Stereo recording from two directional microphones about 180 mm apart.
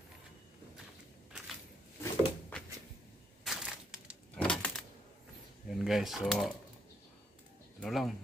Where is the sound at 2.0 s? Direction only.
10° left (ahead or behind).